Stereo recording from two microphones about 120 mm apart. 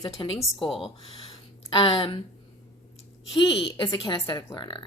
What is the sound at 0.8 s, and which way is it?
Speech, 45° left (ahead or behind).